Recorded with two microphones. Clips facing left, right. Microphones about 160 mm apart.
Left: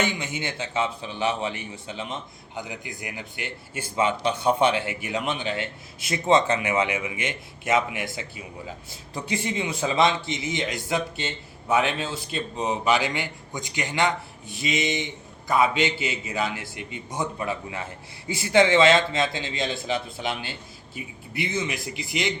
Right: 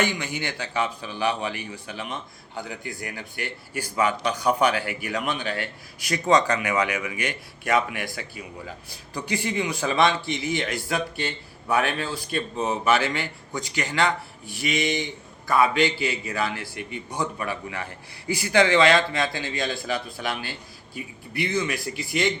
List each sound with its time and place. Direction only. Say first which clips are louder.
0.0 s a man's voice: right 1 dB; 25° left (ahead or behind)